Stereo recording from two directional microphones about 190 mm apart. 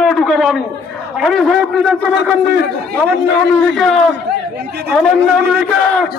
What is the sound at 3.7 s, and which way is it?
Speech, centre (ahead or behind).